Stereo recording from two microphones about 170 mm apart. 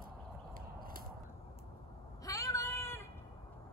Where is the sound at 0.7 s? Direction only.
60° right (ahead or behind).